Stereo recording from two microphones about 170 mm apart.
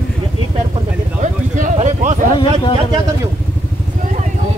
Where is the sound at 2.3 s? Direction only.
30° left (ahead or behind).